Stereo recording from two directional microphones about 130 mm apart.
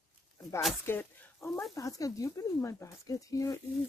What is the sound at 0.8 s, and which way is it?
Speech, 15° left (ahead or behind).